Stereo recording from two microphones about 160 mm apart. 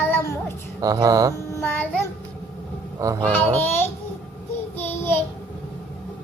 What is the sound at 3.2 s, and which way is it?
Speech, 10° left (ahead or behind).